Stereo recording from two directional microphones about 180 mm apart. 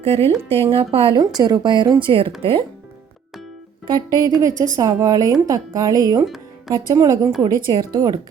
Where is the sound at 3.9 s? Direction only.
20° right (ahead or behind).